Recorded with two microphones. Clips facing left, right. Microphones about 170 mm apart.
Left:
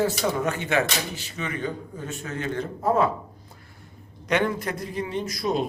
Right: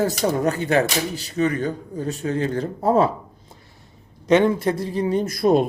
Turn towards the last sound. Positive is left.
turn(degrees=-55)  # may be behind; listen again after turning